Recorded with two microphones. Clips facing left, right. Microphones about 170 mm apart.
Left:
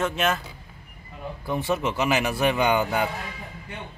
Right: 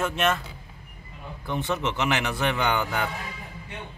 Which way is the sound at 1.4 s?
5° left (ahead or behind).